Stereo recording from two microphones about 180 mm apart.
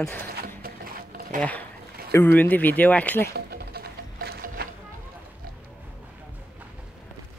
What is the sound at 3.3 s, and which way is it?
Music, 60° right (ahead or behind).